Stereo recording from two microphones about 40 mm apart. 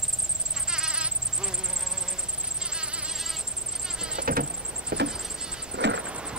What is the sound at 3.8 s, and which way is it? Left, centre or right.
Vehicle, centre.